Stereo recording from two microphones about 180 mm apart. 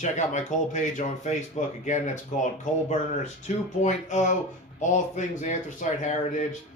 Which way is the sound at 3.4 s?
40° left (ahead or behind).